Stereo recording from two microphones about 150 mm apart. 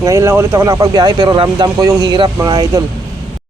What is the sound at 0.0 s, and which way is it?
Speech, 20° right (ahead or behind).